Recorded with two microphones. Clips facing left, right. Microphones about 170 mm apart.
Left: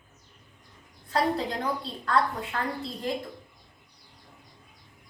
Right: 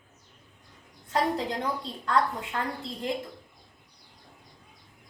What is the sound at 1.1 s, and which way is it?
A woman's voice, 20° right (ahead or behind).